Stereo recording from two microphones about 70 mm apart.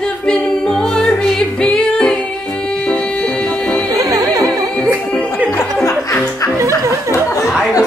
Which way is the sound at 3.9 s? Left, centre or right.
Right.